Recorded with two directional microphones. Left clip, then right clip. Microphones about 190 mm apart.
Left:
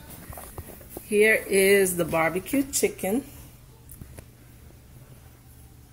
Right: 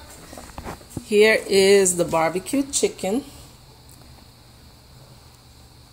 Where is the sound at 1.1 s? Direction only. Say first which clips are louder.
Right 4 dB; 20° right (ahead or behind).